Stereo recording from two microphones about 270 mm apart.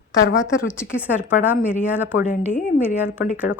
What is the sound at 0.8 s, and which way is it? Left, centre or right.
Speech, left.